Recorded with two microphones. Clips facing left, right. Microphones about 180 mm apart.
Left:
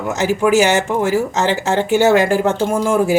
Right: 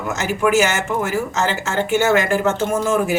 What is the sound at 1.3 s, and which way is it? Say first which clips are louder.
Speech: left 4 dB; 35° left (ahead or behind).